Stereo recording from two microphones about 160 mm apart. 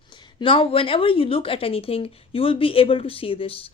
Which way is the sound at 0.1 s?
30° left (ahead or behind).